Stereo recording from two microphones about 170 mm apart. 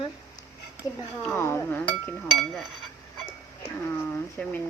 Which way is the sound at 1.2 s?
15° left (ahead or behind).